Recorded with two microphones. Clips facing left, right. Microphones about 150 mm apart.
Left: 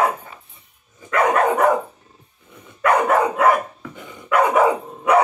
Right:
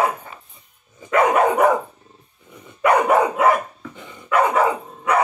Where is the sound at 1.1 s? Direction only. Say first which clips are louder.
Right 1 dB; 15° right (ahead or behind).